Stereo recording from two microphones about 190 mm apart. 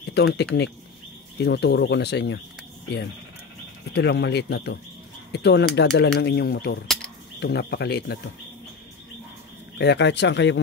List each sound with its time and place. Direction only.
0.1 s speech: 60° left (ahead or behind)
3.9 s speech: 60° left (ahead or behind)
9.8 s speech: 65° left (ahead or behind)